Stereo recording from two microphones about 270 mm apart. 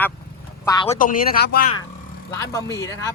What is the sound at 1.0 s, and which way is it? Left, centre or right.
Speech, left.